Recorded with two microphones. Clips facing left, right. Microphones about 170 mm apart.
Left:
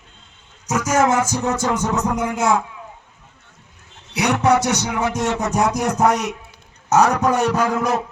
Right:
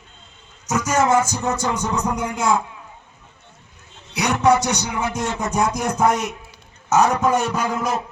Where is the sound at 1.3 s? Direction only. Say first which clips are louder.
Left 2 dB; 80° left.